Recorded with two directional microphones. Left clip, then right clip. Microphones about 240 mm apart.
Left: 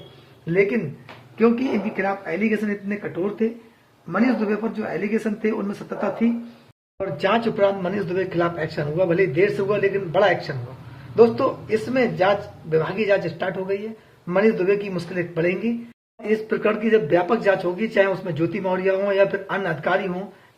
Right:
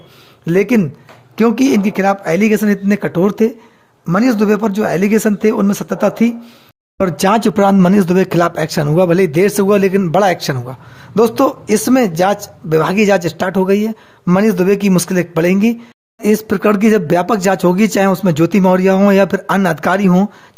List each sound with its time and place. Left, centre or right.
0.4 s speech: right